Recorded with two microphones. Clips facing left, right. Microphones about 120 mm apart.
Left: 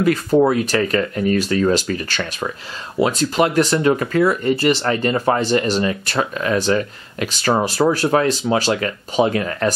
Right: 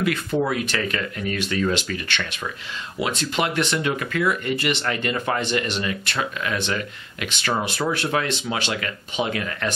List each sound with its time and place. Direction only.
0.0 s speech: 40° left (ahead or behind)